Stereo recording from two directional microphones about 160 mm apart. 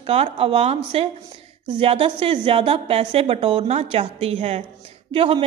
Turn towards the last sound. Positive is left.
turn(degrees=-35)  # may be behind; listen again after turning